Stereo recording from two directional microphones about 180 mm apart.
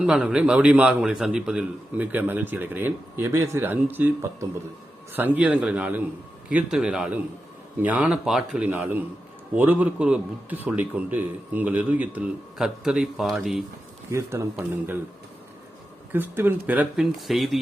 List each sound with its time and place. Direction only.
0.0 s a man's voice: 5° right (ahead or behind)
14.1 s a man's voice: 15° right (ahead or behind)
16.1 s a man's voice: 10° right (ahead or behind)